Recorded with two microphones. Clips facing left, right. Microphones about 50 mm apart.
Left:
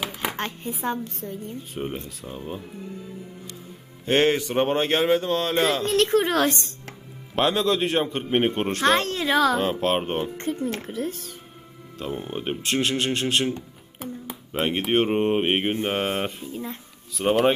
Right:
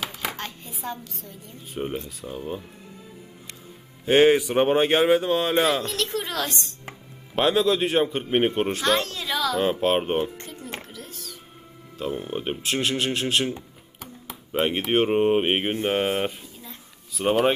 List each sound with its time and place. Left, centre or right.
0.2 s a woman's voice: left
1.7 s speech: centre
4.0 s speech: centre
5.8 s a woman's voice: left
7.3 s speech: centre
8.8 s a woman's voice: left
9.8 s speech: centre
10.3 s a woman's voice: left
11.9 s speech: centre
16.4 s a sound: left
17.2 s speech: centre